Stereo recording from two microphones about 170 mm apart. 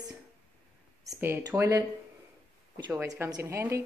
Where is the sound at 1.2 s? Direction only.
15° right (ahead or behind).